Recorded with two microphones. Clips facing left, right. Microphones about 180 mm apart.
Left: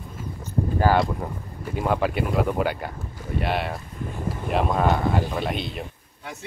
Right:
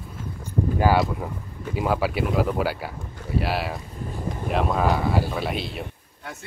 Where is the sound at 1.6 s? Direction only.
5° right (ahead or behind).